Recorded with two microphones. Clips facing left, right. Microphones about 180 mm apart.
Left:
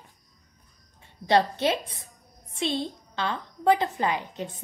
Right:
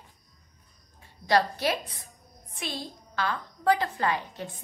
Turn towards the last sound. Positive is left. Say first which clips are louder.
# left 1 dB
turn(degrees=20)  # may be behind; listen again after turning